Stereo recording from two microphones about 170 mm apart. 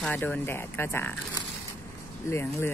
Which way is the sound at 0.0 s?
10° left (ahead or behind).